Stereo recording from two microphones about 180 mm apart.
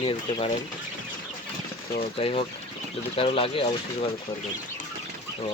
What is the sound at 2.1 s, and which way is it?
Speech, 30° left (ahead or behind).